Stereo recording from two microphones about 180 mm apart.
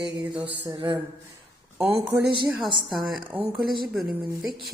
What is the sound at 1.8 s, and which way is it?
Speech, 15° right (ahead or behind).